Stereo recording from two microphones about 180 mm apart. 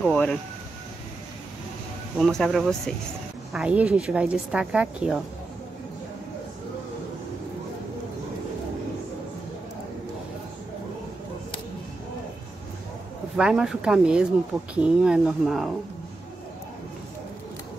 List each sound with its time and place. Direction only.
0.0 s speech: 5° left (ahead or behind)
2.1 s speech: centre (ahead or behind)
13.4 s speech: 5° right (ahead or behind)